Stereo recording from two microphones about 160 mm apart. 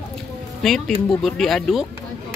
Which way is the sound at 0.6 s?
Centre (ahead or behind).